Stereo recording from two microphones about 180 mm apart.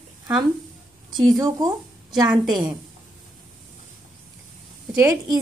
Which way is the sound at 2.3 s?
5° right (ahead or behind).